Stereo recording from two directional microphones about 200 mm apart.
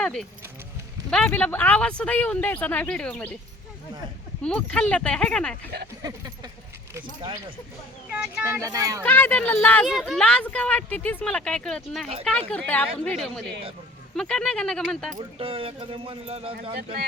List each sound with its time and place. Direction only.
0.0 s speech: 5° left (ahead or behind)
4.4 s speech: 5° left (ahead or behind)
6.0 s speech: 20° right (ahead or behind)
8.1 s speech: 5° right (ahead or behind)
9.0 s speech: 10° left (ahead or behind)
15.2 s speech: 25° right (ahead or behind)